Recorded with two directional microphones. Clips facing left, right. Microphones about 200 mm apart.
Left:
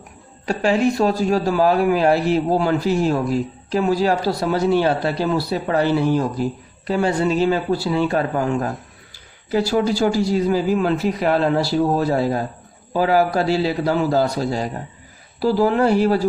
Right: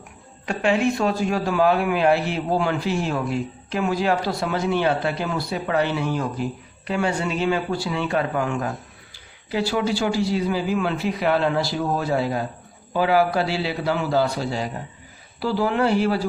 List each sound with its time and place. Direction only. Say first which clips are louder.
0.4 s a man's voice: left 3 dB; 35° left (ahead or behind)